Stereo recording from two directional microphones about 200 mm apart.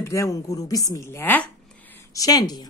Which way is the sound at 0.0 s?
15° left (ahead or behind).